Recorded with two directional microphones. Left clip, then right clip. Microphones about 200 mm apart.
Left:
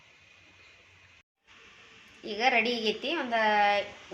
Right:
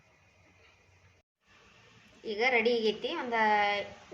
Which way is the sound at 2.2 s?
30° left (ahead or behind).